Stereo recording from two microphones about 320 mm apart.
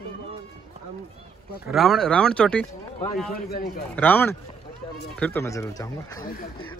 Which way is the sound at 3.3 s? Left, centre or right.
Left.